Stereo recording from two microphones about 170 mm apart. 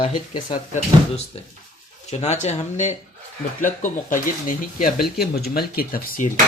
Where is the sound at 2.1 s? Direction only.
40° left (ahead or behind); by 6.3 s 60° left (ahead or behind).